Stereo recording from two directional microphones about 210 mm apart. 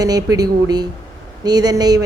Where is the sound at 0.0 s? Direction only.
15° right (ahead or behind).